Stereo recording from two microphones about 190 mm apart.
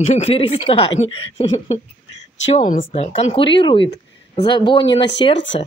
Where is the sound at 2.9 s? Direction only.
30° left (ahead or behind).